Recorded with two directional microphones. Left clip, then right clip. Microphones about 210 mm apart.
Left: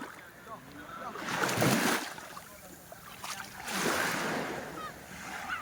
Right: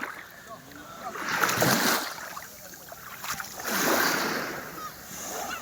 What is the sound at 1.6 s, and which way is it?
Boat, 15° right (ahead or behind).